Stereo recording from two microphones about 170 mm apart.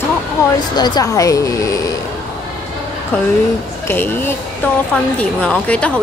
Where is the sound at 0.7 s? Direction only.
25° left (ahead or behind).